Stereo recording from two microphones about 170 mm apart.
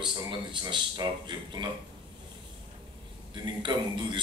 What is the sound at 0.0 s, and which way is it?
A man's voice, 25° right (ahead or behind).